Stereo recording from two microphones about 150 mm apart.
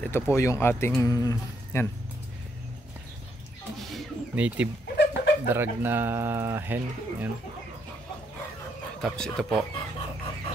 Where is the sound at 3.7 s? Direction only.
5° right (ahead or behind).